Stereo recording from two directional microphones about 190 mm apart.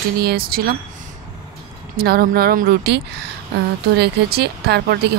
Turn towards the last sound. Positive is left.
turn(degrees=-60)  # may be behind; listen again after turning